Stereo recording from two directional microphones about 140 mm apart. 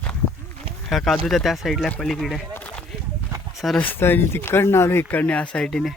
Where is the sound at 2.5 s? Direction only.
10° left (ahead or behind).